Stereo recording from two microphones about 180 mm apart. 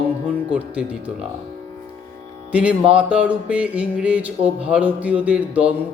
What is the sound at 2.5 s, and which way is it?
Speech, 5° right (ahead or behind).